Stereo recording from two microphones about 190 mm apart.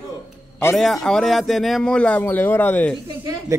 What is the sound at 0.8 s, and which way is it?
A man's voice, centre (ahead or behind).